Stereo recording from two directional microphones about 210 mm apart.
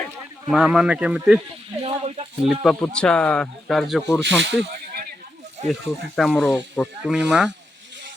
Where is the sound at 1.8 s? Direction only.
30° right (ahead or behind).